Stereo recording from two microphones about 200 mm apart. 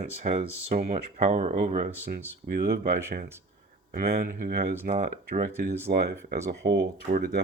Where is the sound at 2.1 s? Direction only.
50° right (ahead or behind).